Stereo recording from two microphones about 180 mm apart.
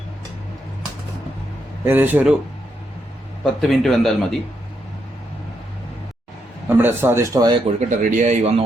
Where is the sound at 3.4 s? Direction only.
Centre (ahead or behind).